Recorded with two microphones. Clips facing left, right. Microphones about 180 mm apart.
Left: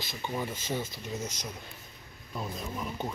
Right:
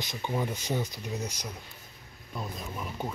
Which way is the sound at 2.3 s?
Centre (ahead or behind).